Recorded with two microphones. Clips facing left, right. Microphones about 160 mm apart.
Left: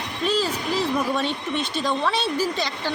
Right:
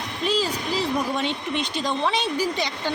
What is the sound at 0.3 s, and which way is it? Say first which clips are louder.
Speech: left 1 dB; 15° right (ahead or behind).